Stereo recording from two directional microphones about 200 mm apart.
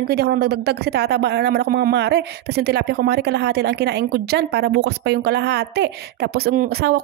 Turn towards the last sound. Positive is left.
turn(degrees=-50)  # may be behind; listen again after turning